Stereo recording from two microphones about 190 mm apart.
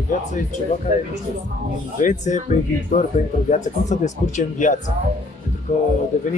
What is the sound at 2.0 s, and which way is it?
Speech, 40° left (ahead or behind).